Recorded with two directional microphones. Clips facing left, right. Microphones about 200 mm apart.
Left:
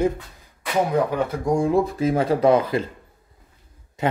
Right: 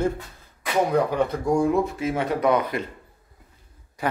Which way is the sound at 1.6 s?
30° left (ahead or behind).